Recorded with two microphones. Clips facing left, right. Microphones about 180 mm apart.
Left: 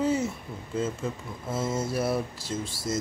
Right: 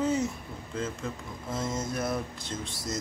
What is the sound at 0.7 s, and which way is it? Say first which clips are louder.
Speech: left 4 dB; 5° left (ahead or behind).